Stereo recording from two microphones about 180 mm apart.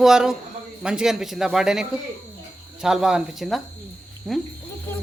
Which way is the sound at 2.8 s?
5° right (ahead or behind).